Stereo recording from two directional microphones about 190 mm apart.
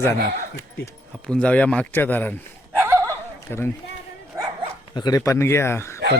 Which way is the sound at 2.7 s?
15° right (ahead or behind).